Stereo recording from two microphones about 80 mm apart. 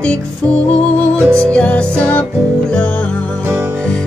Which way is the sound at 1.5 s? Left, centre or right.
Centre.